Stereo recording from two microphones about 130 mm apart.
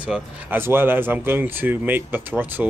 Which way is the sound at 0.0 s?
10° right (ahead or behind).